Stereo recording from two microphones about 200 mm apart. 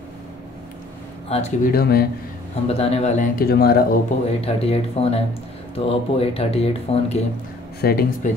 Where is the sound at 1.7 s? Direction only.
50° left (ahead or behind).